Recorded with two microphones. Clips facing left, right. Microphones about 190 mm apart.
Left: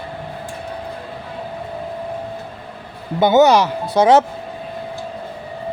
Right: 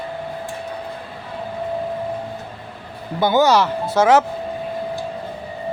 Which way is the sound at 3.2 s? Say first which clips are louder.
Left 3 dB; 20° left (ahead or behind).